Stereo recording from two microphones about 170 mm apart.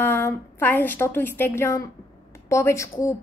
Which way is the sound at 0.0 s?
15° left (ahead or behind).